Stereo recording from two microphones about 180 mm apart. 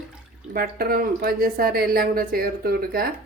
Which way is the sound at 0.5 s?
55° right (ahead or behind).